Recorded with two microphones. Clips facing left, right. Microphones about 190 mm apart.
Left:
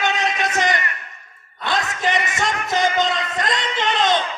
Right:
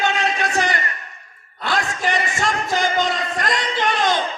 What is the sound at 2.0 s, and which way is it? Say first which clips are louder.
Music: left 1 dB; 20° left (ahead or behind).